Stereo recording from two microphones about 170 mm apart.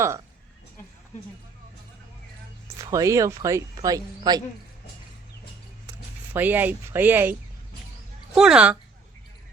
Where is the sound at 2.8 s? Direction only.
20° right (ahead or behind).